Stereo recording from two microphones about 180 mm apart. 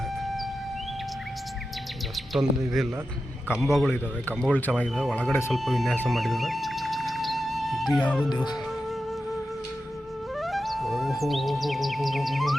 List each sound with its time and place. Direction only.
2.1 s speech: centre (ahead or behind)
5.5 s music: centre (ahead or behind)
10.3 s music: centre (ahead or behind)